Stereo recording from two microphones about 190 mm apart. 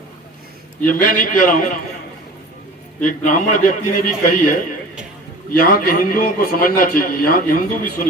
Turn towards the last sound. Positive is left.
turn(degrees=45)  # may be behind; listen again after turning